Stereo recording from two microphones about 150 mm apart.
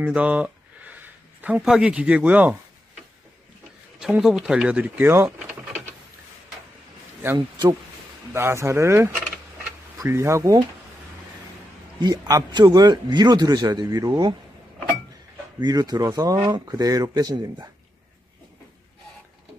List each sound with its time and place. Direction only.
0.0 s speech: 10° right (ahead or behind)
4.0 s speech: 5° right (ahead or behind)
7.3 s a man's voice: 30° right (ahead or behind)
8.3 s a man's voice: 20° right (ahead or behind)
12.0 s a man's voice: 25° right (ahead or behind)
15.6 s a man's voice: 25° right (ahead or behind)